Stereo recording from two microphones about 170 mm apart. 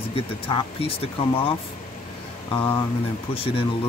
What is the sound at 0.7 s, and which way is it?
Speech, 35° left (ahead or behind).